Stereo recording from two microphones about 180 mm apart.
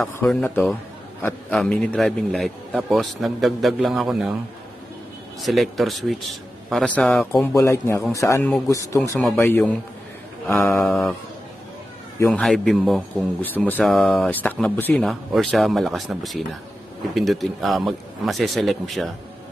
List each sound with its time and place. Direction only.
0.0 s speech: 5° left (ahead or behind)
5.4 s speech: centre (ahead or behind)
7.5 s speech: 15° left (ahead or behind)
9.2 s speech: centre (ahead or behind)
12.3 s speech: centre (ahead or behind)